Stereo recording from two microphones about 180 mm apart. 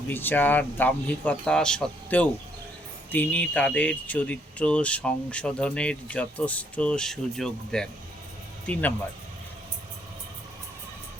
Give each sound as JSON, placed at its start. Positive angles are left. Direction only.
{"t": 0.1, "sound": "speech", "side_deg": 10}